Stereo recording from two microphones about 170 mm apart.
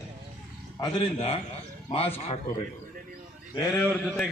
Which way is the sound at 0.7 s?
25° left (ahead or behind).